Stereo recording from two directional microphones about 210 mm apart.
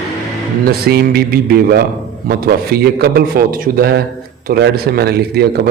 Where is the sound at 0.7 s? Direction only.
45° right (ahead or behind).